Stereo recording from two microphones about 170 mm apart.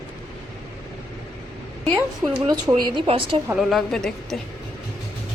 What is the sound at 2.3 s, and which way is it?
A woman's voice, 25° right (ahead or behind).